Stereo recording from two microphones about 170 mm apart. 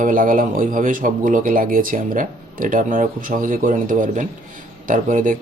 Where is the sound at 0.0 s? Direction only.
50° right (ahead or behind).